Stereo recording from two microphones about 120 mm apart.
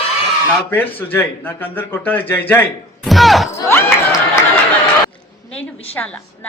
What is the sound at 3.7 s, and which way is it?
Crowd, 20° left (ahead or behind).